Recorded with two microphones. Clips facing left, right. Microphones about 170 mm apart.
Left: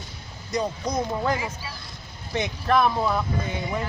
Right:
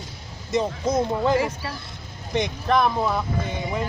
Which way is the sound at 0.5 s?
25° right (ahead or behind).